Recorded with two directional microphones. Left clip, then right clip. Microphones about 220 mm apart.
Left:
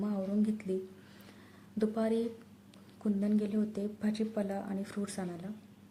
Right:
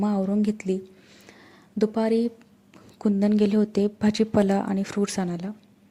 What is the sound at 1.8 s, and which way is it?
A woman's voice, 35° right (ahead or behind).